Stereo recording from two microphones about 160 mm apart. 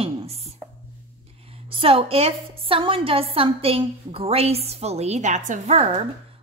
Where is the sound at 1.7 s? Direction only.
35° right (ahead or behind).